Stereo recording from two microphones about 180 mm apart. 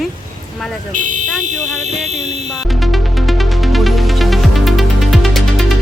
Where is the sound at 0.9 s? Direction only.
45° right (ahead or behind).